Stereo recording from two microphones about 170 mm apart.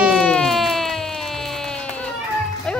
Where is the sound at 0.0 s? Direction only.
Centre (ahead or behind).